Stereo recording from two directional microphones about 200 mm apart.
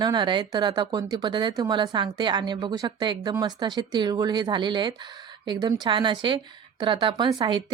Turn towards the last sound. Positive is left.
turn(degrees=-20)  # may be behind; listen again after turning